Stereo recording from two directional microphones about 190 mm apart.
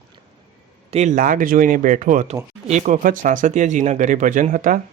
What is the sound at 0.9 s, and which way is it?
Speech, 35° right (ahead or behind).